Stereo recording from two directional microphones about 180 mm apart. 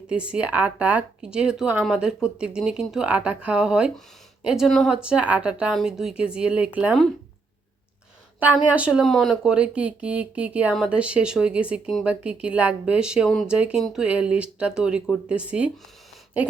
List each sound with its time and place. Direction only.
0.1 s speech: 5° right (ahead or behind)
8.4 s speech: 10° right (ahead or behind)